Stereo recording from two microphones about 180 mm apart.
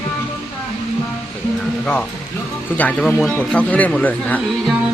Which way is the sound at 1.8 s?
10° left (ahead or behind).